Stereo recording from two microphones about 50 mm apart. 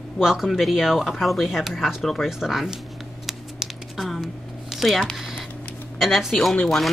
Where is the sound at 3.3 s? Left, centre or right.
Centre.